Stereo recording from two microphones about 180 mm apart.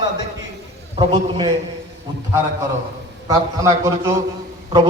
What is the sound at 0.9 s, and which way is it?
Speech, 25° right (ahead or behind).